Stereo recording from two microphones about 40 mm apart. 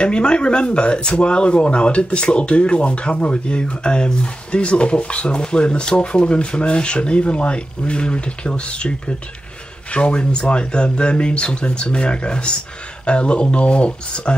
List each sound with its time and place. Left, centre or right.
0.0 s speech: left
9.9 s speech: left